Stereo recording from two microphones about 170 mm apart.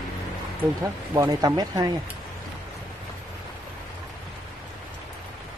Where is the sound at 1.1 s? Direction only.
20° right (ahead or behind).